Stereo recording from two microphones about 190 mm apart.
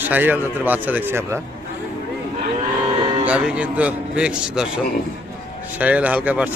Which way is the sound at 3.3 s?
5° right (ahead or behind).